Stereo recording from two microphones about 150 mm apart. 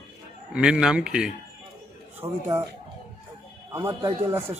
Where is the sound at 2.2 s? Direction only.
15° right (ahead or behind).